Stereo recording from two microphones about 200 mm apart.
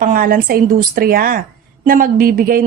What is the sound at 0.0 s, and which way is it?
A woman's voice, 45° right (ahead or behind).